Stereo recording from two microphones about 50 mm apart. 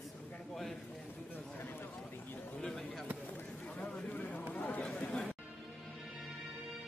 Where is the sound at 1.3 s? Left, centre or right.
Left.